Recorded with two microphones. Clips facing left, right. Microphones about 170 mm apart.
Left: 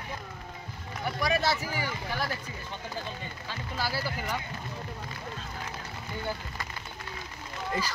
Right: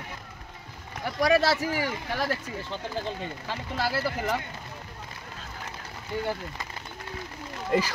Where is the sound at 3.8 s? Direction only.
65° right (ahead or behind).